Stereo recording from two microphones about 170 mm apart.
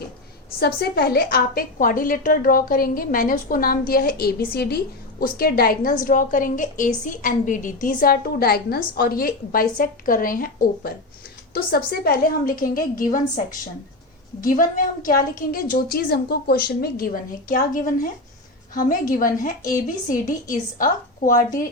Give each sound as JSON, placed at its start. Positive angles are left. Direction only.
{"t": 0.6, "sound": "a woman's voice", "side_deg": 70}